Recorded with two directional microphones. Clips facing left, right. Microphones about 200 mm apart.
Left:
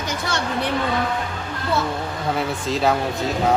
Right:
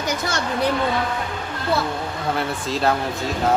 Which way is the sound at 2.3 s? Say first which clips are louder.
Left 2 dB; centre (ahead or behind).